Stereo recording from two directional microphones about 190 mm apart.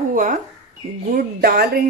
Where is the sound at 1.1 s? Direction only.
55° right (ahead or behind).